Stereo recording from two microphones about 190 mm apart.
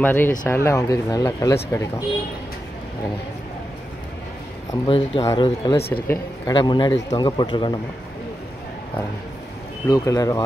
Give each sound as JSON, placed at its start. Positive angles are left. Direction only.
{"t": 0.0, "sound": "speech", "side_deg": 10}
{"t": 4.8, "sound": "a man's voice", "side_deg": 30}
{"t": 9.8, "sound": "a man's voice", "side_deg": 20}